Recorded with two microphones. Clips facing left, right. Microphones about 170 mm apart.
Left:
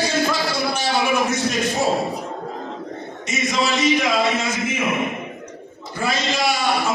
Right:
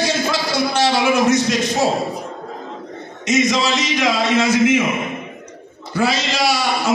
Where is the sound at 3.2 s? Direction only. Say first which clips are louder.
Right 5 dB; 90° right.